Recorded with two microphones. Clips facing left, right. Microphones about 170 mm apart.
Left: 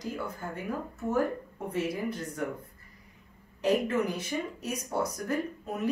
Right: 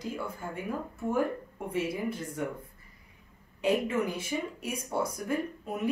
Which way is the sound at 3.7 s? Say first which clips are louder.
Left 1 dB; 10° right (ahead or behind).